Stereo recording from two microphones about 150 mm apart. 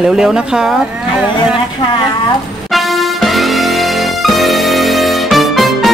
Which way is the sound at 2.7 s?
Centre (ahead or behind).